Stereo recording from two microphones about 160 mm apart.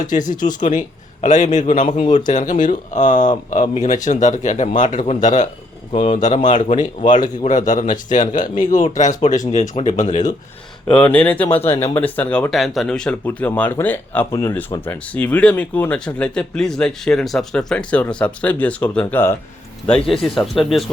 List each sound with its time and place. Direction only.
0.0 s a man's voice: 55° left (ahead or behind)
10.9 s speech: 10° left (ahead or behind)